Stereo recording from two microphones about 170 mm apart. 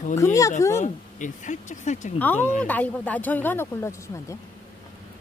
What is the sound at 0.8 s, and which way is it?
Speech, 45° left (ahead or behind).